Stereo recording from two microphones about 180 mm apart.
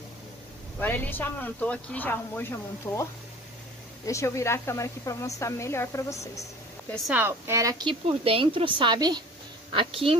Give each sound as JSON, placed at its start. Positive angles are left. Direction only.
{"t": 0.7, "sound": "speech", "side_deg": 10}
{"t": 7.1, "sound": "speech", "side_deg": -10}
{"t": 7.9, "sound": "a woman's voice", "side_deg": -30}